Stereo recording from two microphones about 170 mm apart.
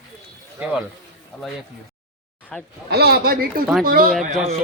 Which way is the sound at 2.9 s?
65° right (ahead or behind).